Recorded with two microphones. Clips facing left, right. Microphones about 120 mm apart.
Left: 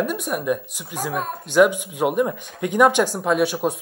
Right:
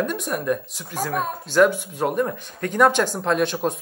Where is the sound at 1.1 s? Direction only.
Centre (ahead or behind).